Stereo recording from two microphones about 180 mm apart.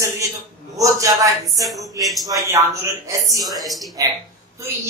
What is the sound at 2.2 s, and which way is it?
A man's voice, 20° right (ahead or behind).